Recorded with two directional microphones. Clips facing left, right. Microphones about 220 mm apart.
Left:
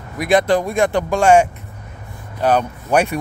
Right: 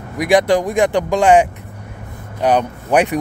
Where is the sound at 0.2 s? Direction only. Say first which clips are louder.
Right 2 dB; 15° right (ahead or behind).